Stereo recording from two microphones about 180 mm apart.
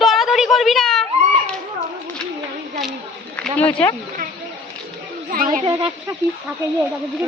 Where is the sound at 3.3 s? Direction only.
10° left (ahead or behind).